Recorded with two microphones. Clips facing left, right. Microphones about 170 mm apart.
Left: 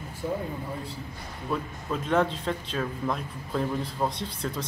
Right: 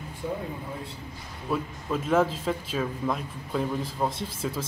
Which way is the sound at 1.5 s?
5° right (ahead or behind).